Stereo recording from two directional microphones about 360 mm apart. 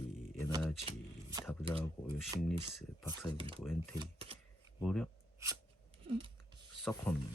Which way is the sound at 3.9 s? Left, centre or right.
Centre.